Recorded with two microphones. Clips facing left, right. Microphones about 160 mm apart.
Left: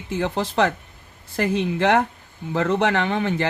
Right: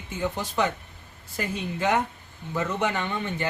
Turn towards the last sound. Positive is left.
turn(degrees=90)